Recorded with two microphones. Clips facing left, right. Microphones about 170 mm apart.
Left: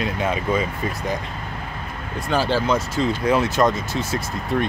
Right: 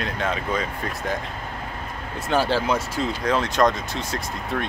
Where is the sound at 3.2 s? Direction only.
10° left (ahead or behind).